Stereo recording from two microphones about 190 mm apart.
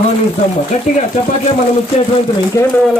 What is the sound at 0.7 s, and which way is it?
Speech, 35° left (ahead or behind).